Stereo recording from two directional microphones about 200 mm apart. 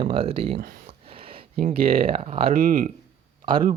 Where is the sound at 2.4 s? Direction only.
45° right (ahead or behind).